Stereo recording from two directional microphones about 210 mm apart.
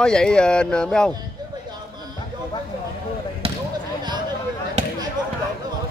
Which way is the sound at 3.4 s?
25° right (ahead or behind).